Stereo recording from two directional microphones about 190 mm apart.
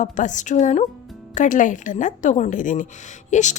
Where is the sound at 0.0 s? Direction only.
40° left (ahead or behind).